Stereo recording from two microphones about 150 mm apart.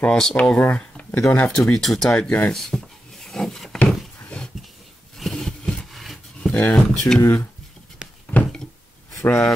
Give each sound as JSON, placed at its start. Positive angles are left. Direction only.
{"t": 0.0, "sound": "speech", "side_deg": 5}
{"t": 2.5, "sound": "wood", "side_deg": 5}
{"t": 4.2, "sound": "dog", "side_deg": 5}
{"t": 5.1, "sound": "a sound", "side_deg": 0}
{"t": 9.1, "sound": "a man's voice", "side_deg": 15}